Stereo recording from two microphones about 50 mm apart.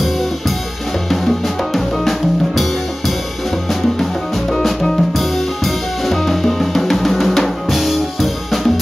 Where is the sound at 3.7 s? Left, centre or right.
Centre.